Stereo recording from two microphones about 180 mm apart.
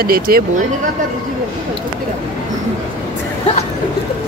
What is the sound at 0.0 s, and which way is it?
Speech, 55° right (ahead or behind).